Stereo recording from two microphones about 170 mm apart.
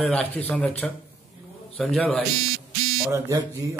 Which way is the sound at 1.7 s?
Centre (ahead or behind).